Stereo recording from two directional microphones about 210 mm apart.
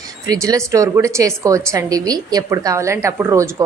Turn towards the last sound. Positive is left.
turn(degrees=-15)  # may be behind; listen again after turning